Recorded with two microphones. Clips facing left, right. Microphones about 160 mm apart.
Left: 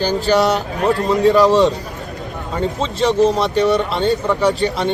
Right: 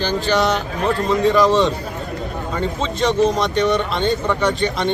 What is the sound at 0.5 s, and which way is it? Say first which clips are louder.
Speech: left 3 dB; 40° left (ahead or behind).